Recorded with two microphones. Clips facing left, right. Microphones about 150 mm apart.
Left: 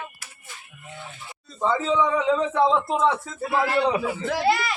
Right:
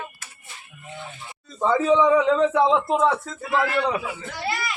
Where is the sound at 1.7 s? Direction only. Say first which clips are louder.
Right 5 dB; 10° right (ahead or behind).